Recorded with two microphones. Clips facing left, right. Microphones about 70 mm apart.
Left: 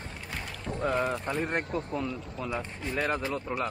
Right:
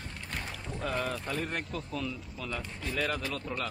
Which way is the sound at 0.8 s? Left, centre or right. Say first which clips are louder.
Left 5 dB; left.